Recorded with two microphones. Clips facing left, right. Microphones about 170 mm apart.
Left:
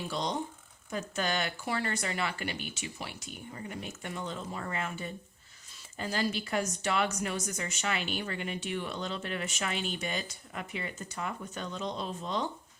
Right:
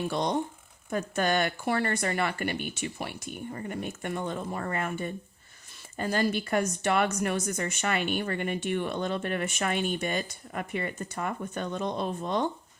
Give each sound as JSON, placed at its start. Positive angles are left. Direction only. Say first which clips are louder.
{"t": 0.1, "sound": "a woman's voice", "louder": "right 5 dB", "side_deg": -55}